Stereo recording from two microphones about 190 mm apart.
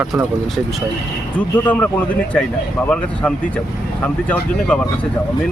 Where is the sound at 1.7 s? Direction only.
10° left (ahead or behind).